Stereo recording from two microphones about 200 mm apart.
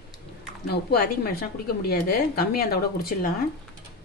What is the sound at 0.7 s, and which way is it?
A woman's voice, 50° left (ahead or behind).